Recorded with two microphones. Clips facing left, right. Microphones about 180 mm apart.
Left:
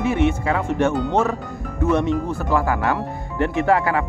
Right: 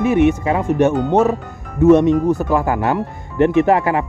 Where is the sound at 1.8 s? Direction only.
20° right (ahead or behind).